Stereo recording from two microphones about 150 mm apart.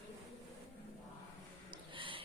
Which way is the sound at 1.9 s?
35° right (ahead or behind).